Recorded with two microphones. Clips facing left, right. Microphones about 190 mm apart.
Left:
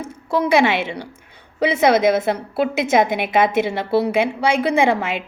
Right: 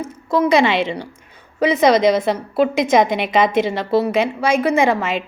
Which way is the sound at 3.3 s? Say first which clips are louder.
Right 1 dB; 10° left (ahead or behind).